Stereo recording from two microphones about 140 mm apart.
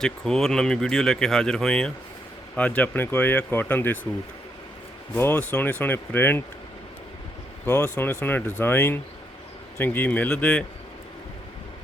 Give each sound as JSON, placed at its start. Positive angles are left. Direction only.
{"t": 0.0, "sound": "speech", "side_deg": 5}
{"t": 5.1, "sound": "speech", "side_deg": 15}
{"t": 7.6, "sound": "speech", "side_deg": 20}